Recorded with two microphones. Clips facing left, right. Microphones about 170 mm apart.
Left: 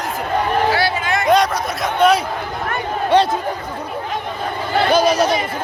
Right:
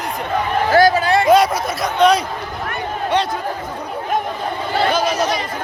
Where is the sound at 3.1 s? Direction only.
30° left (ahead or behind).